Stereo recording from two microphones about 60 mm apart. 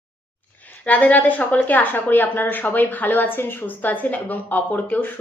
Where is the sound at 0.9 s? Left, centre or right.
Left.